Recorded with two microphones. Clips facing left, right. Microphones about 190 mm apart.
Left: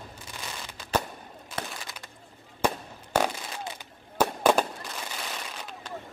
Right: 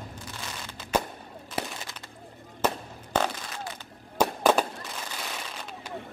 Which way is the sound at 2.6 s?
10° left (ahead or behind).